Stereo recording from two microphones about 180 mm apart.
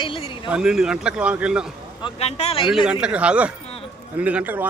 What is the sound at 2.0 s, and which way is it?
Speech, 30° left (ahead or behind).